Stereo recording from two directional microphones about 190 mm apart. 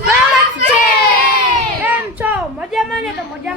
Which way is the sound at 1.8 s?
10° right (ahead or behind).